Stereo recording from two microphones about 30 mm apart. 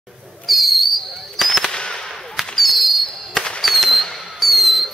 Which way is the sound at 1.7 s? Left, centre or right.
Left.